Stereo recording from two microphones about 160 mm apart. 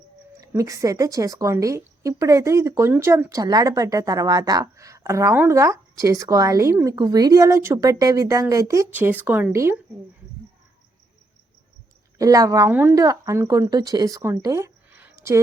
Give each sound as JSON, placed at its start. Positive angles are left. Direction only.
{"t": 0.3, "sound": "speech", "side_deg": -20}
{"t": 12.2, "sound": "speech", "side_deg": -20}